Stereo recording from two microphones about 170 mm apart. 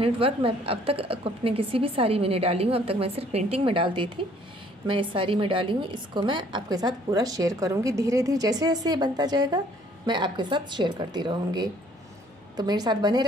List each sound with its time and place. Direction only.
0.0 s a woman's voice: 35° right (ahead or behind)